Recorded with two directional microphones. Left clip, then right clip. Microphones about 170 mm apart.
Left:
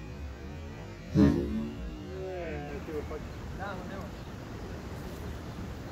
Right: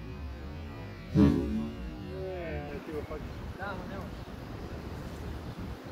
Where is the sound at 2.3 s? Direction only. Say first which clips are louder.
Left 1 dB; 5° right (ahead or behind).